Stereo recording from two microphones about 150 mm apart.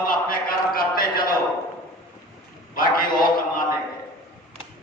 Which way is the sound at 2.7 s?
70° left (ahead or behind).